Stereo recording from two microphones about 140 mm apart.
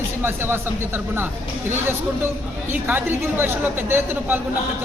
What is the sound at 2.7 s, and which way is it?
A woman's voice, 15° right (ahead or behind).